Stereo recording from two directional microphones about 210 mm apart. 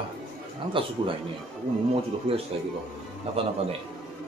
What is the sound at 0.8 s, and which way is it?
Speech, 25° right (ahead or behind).